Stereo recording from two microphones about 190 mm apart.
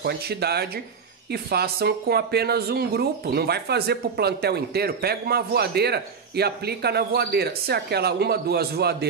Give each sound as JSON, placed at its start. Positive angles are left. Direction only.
{"t": 0.0, "sound": "speech", "side_deg": -55}